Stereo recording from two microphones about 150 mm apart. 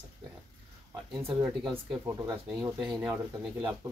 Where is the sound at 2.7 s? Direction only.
10° right (ahead or behind).